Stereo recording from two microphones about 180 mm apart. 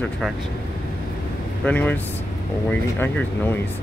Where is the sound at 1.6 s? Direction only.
10° left (ahead or behind).